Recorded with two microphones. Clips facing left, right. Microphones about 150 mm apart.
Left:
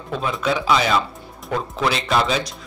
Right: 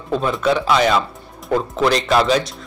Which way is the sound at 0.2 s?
Centre (ahead or behind).